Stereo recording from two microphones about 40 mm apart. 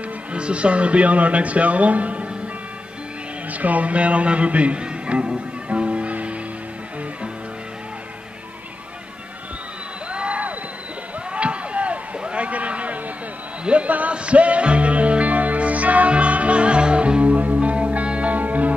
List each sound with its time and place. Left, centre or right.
0.3 s speech: right
3.5 s speech: right
5.7 s music: right
10.1 s a sound: right
14.1 s music: right